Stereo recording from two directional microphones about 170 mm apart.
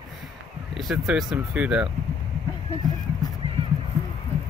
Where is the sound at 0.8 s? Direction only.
Centre (ahead or behind).